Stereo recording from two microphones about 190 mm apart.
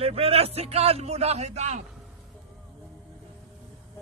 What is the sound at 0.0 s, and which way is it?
A man's voice, 30° right (ahead or behind).